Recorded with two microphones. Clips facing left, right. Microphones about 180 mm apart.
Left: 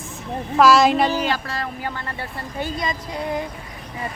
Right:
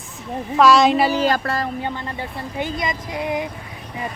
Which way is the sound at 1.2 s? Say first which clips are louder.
Right 5 dB; 50° right (ahead or behind).